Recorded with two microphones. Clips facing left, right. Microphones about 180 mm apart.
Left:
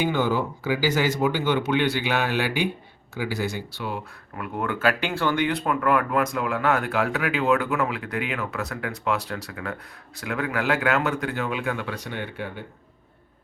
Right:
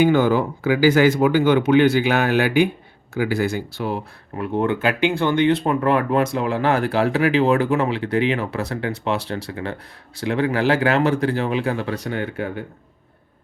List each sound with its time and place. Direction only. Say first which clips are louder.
0.0 s speech: right 7 dB; 50° right (ahead or behind)